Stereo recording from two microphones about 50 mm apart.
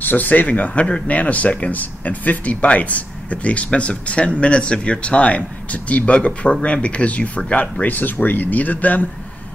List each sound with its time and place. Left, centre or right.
0.0 s speech: left